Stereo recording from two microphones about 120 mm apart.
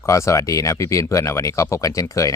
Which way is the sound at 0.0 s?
25° left (ahead or behind).